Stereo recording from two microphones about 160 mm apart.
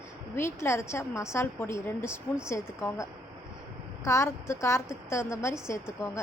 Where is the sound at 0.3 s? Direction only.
15° left (ahead or behind).